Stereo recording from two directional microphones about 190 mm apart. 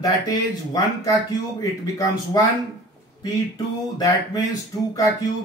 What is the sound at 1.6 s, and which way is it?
Speech, 20° left (ahead or behind).